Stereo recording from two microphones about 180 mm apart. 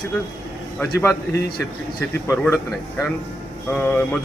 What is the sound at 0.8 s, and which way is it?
Speech, 15° left (ahead or behind).